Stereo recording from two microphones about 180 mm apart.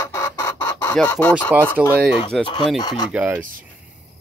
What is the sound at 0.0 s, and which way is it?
Chicken, 15° left (ahead or behind).